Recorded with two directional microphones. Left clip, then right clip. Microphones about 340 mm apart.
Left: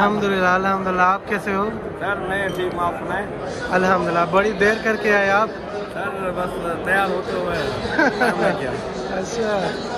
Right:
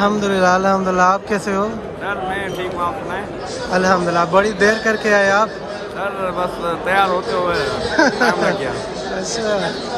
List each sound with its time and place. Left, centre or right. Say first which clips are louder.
0.0 s speech: right 2 dB; centre
3.7 s a man's voice: right 2 dB; centre
7.9 s a man's voice: right 3 dB; centre